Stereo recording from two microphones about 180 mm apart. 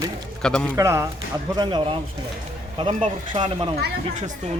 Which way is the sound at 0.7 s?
15° right (ahead or behind).